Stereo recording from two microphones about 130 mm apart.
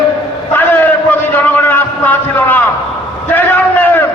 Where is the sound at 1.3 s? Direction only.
15° left (ahead or behind).